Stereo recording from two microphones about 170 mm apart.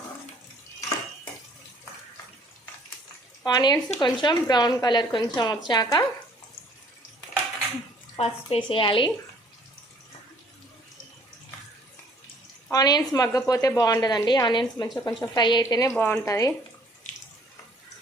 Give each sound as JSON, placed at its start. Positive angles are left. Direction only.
{"t": 3.4, "sound": "speech", "side_deg": 25}
{"t": 8.2, "sound": "a woman's voice", "side_deg": 30}
{"t": 12.7, "sound": "speech", "side_deg": 20}